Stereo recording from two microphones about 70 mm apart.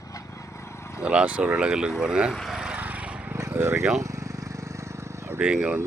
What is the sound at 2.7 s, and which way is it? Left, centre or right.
Vehicle, right.